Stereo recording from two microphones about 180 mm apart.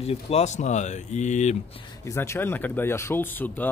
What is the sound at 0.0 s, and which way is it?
Speech, 35° left (ahead or behind).